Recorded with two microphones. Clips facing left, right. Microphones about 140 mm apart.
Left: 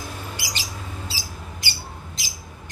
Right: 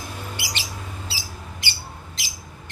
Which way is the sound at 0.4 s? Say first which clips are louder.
Right 1 dB; 40° left (ahead or behind).